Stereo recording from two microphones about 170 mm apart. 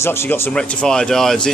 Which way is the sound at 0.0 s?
5° left (ahead or behind).